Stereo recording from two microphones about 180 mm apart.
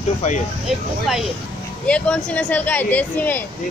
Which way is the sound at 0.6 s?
Centre (ahead or behind).